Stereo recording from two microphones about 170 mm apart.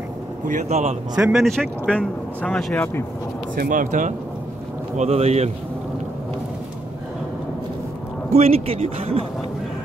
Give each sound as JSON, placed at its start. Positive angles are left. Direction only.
{"t": 0.5, "sound": "speech", "side_deg": -40}
{"t": 1.1, "sound": "speech", "side_deg": -5}
{"t": 3.5, "sound": "speech", "side_deg": -50}
{"t": 4.9, "sound": "speech", "side_deg": -40}
{"t": 8.3, "sound": "speech", "side_deg": -35}